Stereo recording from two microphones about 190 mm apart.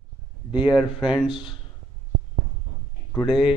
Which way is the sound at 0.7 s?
5° right (ahead or behind).